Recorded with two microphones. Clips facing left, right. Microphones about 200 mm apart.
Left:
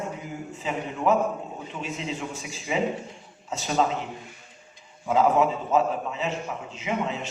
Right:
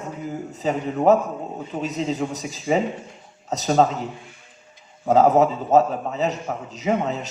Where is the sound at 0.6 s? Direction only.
40° right (ahead or behind).